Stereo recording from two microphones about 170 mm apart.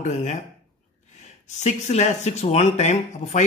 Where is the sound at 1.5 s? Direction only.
45° left (ahead or behind).